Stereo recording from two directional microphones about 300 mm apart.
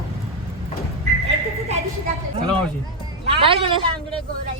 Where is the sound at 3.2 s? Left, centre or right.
Centre.